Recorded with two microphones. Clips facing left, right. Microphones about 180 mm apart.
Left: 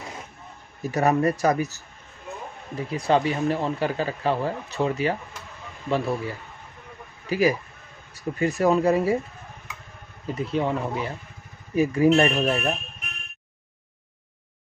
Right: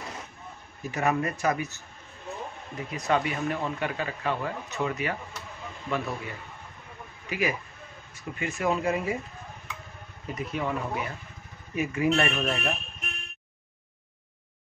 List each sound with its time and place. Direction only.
0.9 s speech: 35° left (ahead or behind)
10.2 s speech: 30° left (ahead or behind)